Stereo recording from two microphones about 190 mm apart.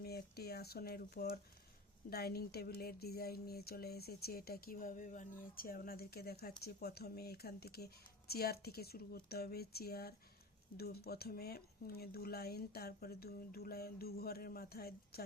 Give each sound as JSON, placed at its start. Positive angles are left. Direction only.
{"t": 0.0, "sound": "speech", "side_deg": 55}